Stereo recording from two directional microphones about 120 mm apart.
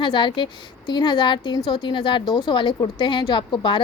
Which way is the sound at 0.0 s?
40° left (ahead or behind).